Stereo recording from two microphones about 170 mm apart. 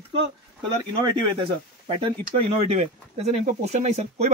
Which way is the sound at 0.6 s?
30° right (ahead or behind).